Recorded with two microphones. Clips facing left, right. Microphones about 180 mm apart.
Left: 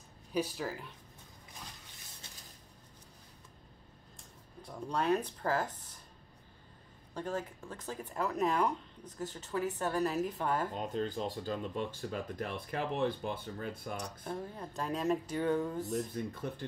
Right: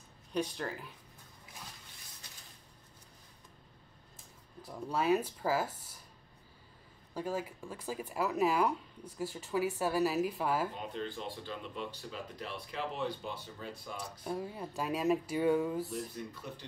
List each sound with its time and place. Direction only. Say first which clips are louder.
0.3 s speech: left 1 dB; 5° left (ahead or behind)
4.2 s speech: even; centre (ahead or behind)
7.2 s speech: right 1 dB; 10° right (ahead or behind)
10.8 s speech: left 4 dB; 40° left (ahead or behind)
14.2 s speech: right 2 dB; 10° right (ahead or behind)